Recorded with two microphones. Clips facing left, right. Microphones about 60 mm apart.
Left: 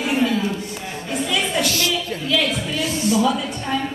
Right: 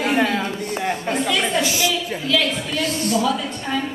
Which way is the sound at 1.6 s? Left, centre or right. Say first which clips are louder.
Right 1 dB; centre.